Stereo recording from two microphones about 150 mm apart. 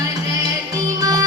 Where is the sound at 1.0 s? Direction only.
25° right (ahead or behind).